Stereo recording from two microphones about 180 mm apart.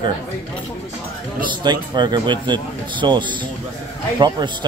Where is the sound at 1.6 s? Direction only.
25° right (ahead or behind).